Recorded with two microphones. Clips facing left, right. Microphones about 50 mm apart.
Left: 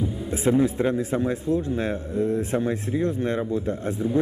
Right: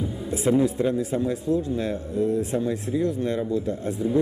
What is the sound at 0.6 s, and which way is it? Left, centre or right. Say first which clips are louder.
A man's voice: even; left.